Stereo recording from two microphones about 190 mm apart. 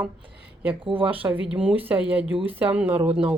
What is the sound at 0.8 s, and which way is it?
Speech, 25° right (ahead or behind).